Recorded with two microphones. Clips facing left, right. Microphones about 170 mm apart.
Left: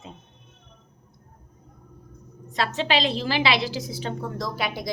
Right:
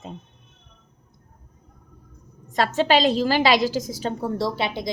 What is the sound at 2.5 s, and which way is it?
A woman's voice, 45° right (ahead or behind).